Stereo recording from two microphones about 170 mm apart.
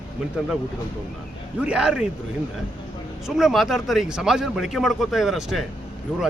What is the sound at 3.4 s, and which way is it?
Speech, centre (ahead or behind).